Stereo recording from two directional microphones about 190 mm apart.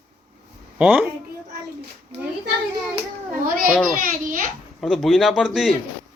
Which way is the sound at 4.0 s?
45° right (ahead or behind).